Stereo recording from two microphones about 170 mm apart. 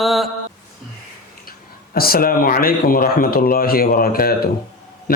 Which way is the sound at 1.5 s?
60° left (ahead or behind).